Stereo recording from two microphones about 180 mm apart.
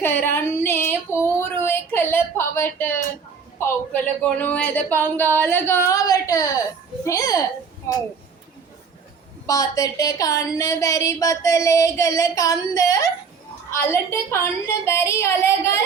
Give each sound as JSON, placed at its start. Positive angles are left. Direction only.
{"t": 0.0, "sound": "female singing", "side_deg": 10}
{"t": 3.6, "sound": "a woman's voice", "side_deg": 10}
{"t": 9.5, "sound": "a woman's voice", "side_deg": 20}